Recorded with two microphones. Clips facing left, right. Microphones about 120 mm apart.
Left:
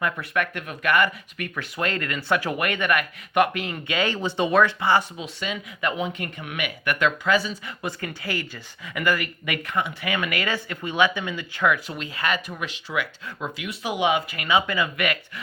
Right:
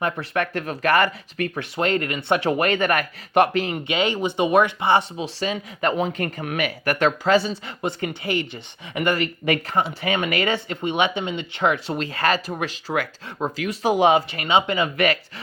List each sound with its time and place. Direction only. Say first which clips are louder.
0.0 s speech: right 2 dB; 30° right (ahead or behind)